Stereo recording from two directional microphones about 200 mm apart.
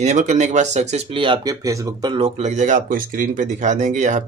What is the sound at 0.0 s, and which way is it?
Speech, 35° right (ahead or behind).